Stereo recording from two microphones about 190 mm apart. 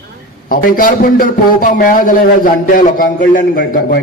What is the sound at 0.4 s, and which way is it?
A man's voice, 50° left (ahead or behind).